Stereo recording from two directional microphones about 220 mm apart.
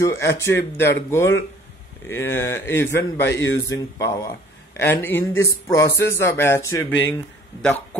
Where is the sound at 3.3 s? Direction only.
55° left (ahead or behind).